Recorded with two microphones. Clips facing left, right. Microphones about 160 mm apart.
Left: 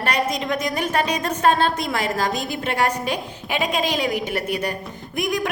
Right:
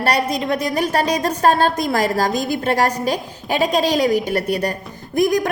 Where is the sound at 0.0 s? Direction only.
35° right (ahead or behind).